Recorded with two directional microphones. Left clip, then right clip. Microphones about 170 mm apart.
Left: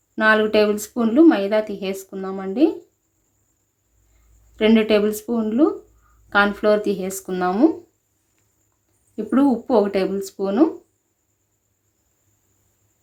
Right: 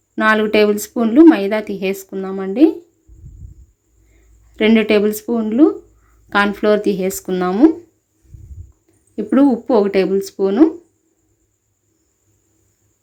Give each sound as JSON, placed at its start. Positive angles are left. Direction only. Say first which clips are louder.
{"t": 0.2, "sound": "speech", "louder": "right 3 dB", "side_deg": -20}
{"t": 4.5, "sound": "speech", "louder": "right 3 dB", "side_deg": -20}
{"t": 9.1, "sound": "speech", "louder": "right 5 dB", "side_deg": -15}